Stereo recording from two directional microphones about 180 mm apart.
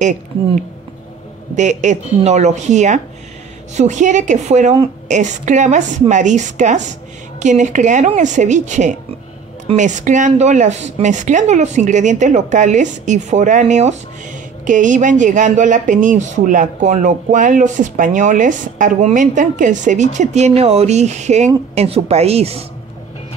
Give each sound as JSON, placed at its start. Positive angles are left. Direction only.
{"t": 0.0, "sound": "speech", "side_deg": -45}